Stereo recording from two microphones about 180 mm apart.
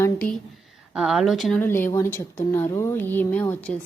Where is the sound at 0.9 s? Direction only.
Centre (ahead or behind).